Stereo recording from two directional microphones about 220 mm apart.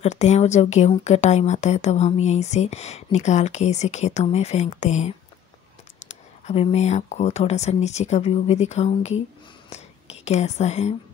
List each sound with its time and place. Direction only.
0.0 s speech: 30° left (ahead or behind)
10.2 s speech: 30° left (ahead or behind)